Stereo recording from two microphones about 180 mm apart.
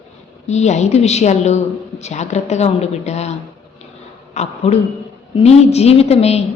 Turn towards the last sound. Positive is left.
turn(degrees=35)  # may be behind; listen again after turning